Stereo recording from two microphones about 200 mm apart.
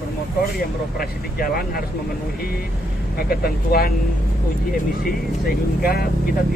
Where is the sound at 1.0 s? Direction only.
45° left (ahead or behind).